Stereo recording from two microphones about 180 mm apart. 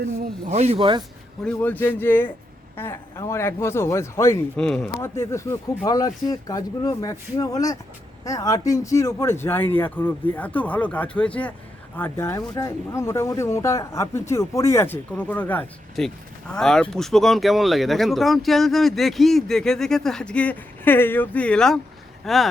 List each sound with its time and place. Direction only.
0.0 s speech: 55° right (ahead or behind)
0.5 s speech: 35° right (ahead or behind)
1.5 s speech: 10° left (ahead or behind)
4.6 s speech: 5° left (ahead or behind)
4.9 s speech: 15° left (ahead or behind); by 22.4 s centre (ahead or behind)